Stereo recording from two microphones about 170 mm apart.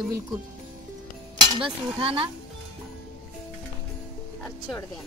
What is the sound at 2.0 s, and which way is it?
Speech, 35° right (ahead or behind).